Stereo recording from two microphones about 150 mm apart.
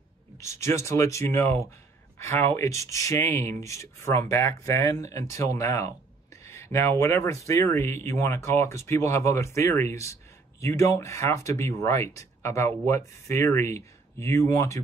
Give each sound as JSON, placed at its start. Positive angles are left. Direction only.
{"t": 0.4, "sound": "speech", "side_deg": 20}